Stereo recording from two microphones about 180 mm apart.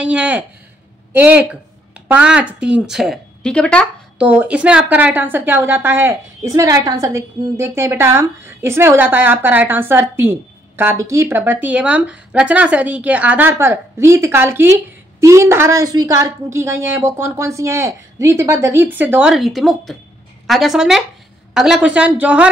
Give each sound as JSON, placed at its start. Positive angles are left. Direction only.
{"t": 0.0, "sound": "a woman's voice", "side_deg": -5}
{"t": 4.3, "sound": "a woman's voice", "side_deg": -10}